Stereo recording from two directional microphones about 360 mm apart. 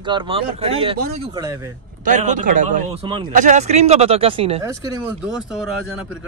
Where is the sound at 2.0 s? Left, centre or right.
Right; by 5.8 s centre.